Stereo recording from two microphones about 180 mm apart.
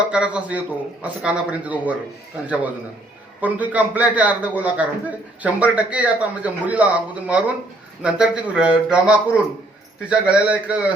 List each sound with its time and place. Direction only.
0.0 s a man's voice: 5° right (ahead or behind)